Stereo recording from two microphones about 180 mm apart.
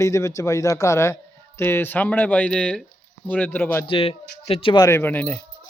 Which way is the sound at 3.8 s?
30° left (ahead or behind).